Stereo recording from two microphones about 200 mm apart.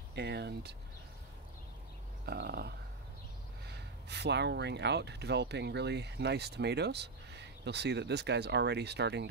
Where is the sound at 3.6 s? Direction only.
55° right (ahead or behind).